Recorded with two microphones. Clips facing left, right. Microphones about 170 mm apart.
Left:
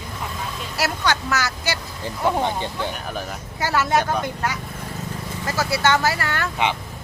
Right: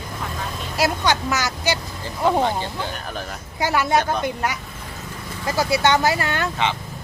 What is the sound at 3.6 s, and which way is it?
Speech, 15° right (ahead or behind).